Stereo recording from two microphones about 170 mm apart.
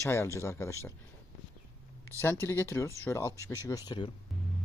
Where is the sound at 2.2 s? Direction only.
15° left (ahead or behind).